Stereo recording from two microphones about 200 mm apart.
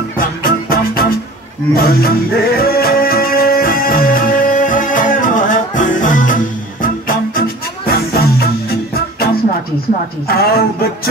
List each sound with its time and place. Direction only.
0.4 s music: 45° left (ahead or behind)
10.2 s a woman's voice: 50° left (ahead or behind)